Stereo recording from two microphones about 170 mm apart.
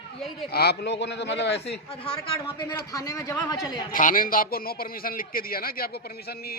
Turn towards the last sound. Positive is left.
turn(degrees=65)  # may be behind; listen again after turning